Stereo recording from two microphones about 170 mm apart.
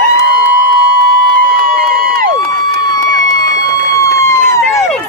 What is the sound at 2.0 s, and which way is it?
Crowd, 60° right (ahead or behind).